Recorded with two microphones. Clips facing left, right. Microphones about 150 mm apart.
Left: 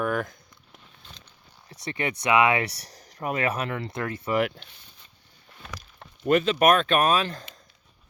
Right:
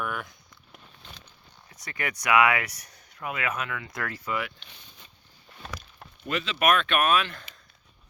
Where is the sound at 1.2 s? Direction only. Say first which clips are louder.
Even; 30° left (ahead or behind).